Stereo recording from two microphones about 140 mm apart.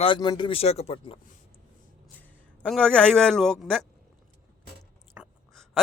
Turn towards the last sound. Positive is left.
turn(degrees=-10)  # may be behind; listen again after turning